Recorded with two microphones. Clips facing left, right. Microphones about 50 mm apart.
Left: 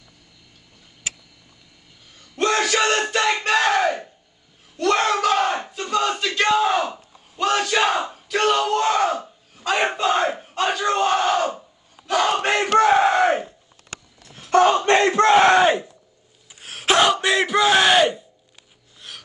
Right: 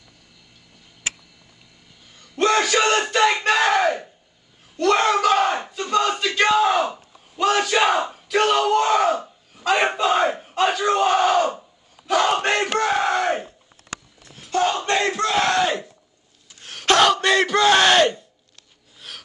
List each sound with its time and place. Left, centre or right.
2.3 s yell: centre
4.7 s battle cry: centre
12.7 s crowd: centre
14.5 s a sound: left
14.8 s crowd: left
16.5 s a sound: centre
18.9 s snort: centre